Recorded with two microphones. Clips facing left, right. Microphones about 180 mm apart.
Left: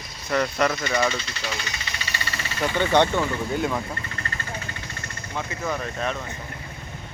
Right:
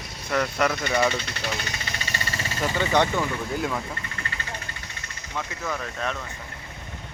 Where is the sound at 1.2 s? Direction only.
55° right (ahead or behind).